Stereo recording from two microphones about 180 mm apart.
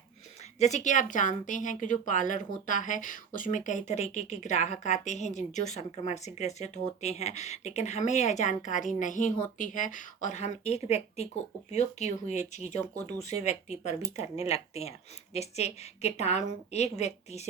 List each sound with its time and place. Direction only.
0.6 s a woman's voice: 40° left (ahead or behind)